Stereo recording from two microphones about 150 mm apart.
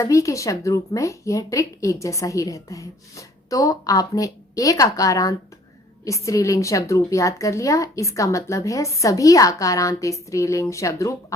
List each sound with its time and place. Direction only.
0.0 s speech: 20° left (ahead or behind)